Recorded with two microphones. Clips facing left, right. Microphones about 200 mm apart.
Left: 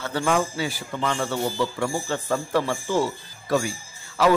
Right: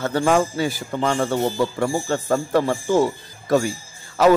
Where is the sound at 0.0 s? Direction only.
45° right (ahead or behind).